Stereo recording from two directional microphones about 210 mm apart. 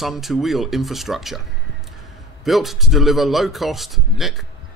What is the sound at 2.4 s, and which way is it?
Speech, centre (ahead or behind).